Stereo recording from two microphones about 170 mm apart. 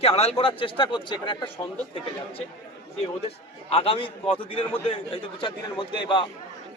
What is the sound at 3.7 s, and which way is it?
A man's voice, 35° left (ahead or behind).